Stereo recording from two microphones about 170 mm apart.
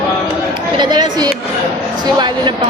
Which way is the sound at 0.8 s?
25° right (ahead or behind).